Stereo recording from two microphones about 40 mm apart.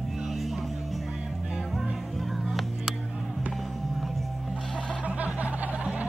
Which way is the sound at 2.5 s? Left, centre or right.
Centre.